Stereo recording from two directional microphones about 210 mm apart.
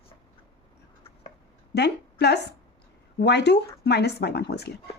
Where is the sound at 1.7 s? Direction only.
50° left (ahead or behind).